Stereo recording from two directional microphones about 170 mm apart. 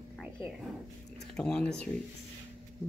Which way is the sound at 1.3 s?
5° left (ahead or behind).